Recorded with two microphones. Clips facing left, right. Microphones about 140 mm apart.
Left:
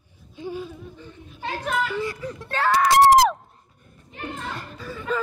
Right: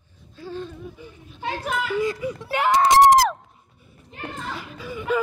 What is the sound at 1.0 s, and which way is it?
A child's voice, 10° right (ahead or behind).